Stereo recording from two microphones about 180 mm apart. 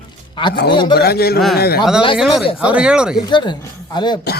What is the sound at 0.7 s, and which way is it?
Speech, 25° left (ahead or behind).